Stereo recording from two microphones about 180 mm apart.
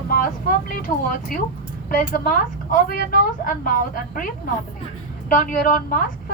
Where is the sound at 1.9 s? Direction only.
50° left (ahead or behind).